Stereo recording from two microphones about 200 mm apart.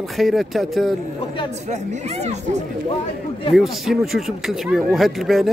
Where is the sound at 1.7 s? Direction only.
35° right (ahead or behind).